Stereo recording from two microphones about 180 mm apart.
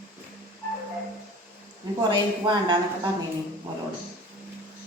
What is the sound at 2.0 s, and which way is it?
Speech, 25° right (ahead or behind).